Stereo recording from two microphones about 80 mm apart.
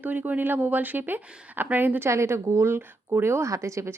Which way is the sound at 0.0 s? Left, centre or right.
Right.